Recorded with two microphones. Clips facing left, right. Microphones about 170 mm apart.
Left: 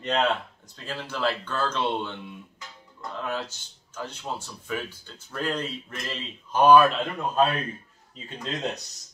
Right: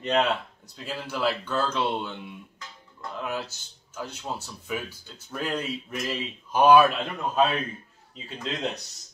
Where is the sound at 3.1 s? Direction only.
10° right (ahead or behind).